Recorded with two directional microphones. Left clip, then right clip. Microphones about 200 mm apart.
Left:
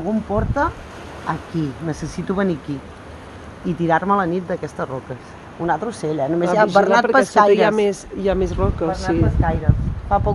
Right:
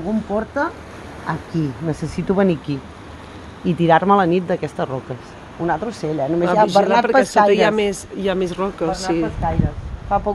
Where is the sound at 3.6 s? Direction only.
50° right (ahead or behind).